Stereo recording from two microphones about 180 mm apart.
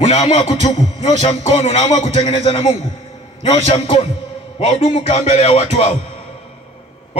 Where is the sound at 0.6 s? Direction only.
25° left (ahead or behind).